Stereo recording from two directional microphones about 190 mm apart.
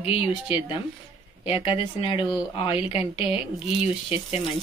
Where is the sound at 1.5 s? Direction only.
30° left (ahead or behind).